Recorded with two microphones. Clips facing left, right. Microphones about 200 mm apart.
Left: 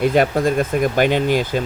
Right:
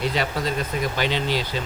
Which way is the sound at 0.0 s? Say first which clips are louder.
Left 9 dB; 50° left (ahead or behind).